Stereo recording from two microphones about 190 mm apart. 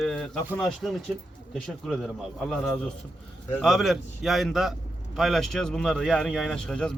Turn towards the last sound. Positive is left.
turn(degrees=5)  # may be behind; listen again after turning